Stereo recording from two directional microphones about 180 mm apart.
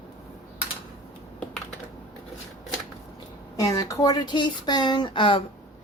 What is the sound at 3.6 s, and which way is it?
Speech, 20° left (ahead or behind).